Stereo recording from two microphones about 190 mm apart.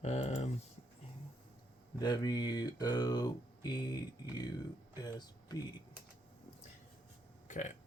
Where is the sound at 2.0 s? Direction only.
20° left (ahead or behind).